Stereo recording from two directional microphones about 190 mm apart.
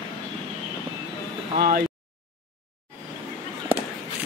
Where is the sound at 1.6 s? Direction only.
50° right (ahead or behind).